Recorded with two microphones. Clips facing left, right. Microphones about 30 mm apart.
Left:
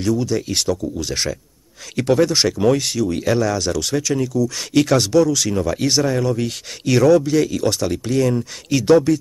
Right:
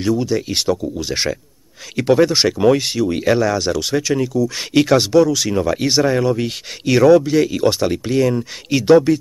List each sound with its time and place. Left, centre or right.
0.0 s speech: centre